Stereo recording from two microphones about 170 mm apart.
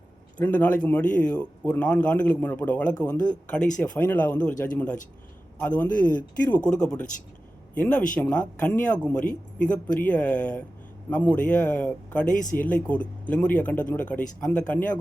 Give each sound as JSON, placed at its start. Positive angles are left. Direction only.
{"t": 0.3, "sound": "speech", "side_deg": 10}
{"t": 12.3, "sound": "speech", "side_deg": 50}
{"t": 12.5, "sound": "speech", "side_deg": 10}